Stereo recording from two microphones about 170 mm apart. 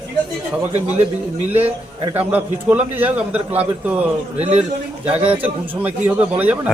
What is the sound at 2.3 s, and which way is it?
A man's voice, 10° right (ahead or behind).